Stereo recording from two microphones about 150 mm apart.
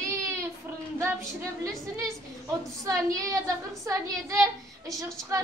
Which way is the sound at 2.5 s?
20° right (ahead or behind).